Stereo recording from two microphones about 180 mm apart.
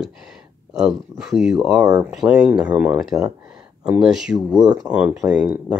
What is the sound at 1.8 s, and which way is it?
Speech, 20° right (ahead or behind).